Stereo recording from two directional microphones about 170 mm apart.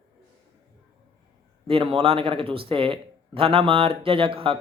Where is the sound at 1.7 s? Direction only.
35° right (ahead or behind).